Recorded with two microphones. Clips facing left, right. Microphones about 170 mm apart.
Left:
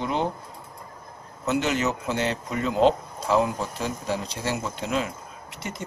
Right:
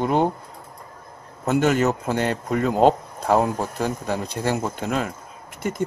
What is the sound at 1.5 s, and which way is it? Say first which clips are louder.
Speech: right 5 dB; 50° right (ahead or behind).